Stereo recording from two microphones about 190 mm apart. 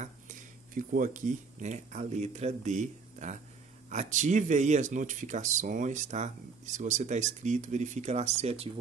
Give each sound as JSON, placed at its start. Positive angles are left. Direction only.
{"t": 0.0, "sound": "speech", "side_deg": -45}